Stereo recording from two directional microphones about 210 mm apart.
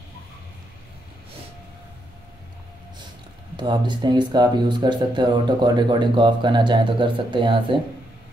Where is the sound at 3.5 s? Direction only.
20° right (ahead or behind).